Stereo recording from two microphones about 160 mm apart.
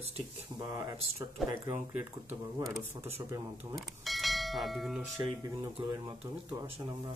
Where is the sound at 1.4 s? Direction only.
15° right (ahead or behind).